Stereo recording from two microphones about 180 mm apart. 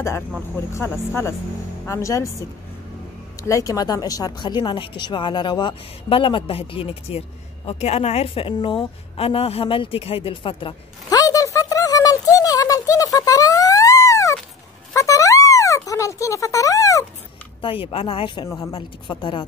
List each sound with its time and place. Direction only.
0.7 s speech: 15° left (ahead or behind)
3.4 s speech: 20° left (ahead or behind)
15.0 s a sound: 15° left (ahead or behind)
17.6 s a woman's voice: 30° left (ahead or behind)